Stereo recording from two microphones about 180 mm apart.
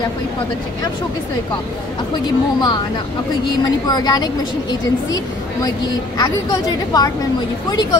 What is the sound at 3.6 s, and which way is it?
Speech, 20° left (ahead or behind).